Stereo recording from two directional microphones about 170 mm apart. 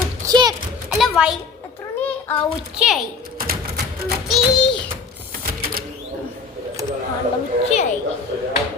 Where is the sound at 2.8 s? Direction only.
Centre (ahead or behind).